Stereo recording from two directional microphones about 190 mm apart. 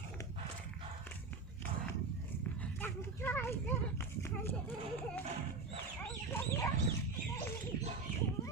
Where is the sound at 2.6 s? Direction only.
10° left (ahead or behind).